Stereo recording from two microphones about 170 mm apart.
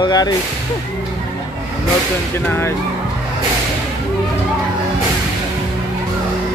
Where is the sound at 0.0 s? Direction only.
25° left (ahead or behind).